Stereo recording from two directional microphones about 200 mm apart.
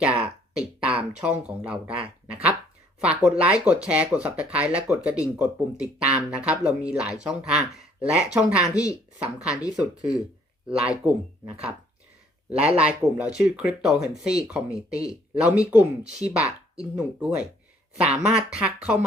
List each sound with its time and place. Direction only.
0.0 s a sound: 5° right (ahead or behind)
0.8 s speech: 5° right (ahead or behind)
8.7 s speech: 15° left (ahead or behind)
9.1 s speech: 5° right (ahead or behind)
10.7 s speech: 5° right (ahead or behind)
14.7 s speech: 15° left (ahead or behind)
15.4 s speech: 5° right (ahead or behind)